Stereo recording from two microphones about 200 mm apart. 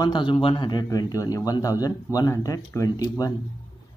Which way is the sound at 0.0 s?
25° left (ahead or behind).